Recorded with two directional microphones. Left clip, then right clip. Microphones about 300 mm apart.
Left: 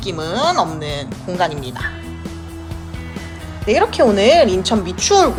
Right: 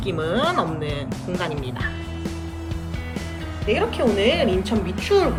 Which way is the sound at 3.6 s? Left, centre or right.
Centre.